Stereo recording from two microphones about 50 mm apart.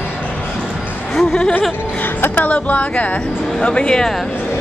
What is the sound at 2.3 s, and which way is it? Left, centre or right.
Speech, left.